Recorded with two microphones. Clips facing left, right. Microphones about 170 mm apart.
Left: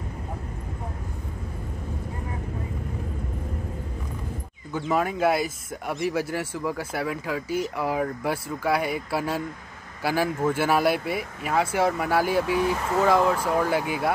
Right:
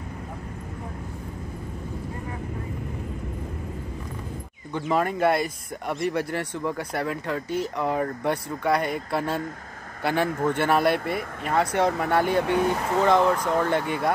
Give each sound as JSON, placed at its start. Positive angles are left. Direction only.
{"t": 4.7, "sound": "speech", "side_deg": 0}